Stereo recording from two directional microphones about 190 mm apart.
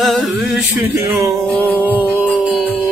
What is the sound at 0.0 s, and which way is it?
A capella, centre (ahead or behind).